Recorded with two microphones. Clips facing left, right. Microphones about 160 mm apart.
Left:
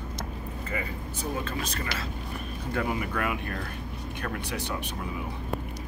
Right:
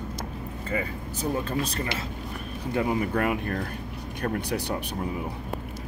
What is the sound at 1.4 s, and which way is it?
Speech, 30° right (ahead or behind).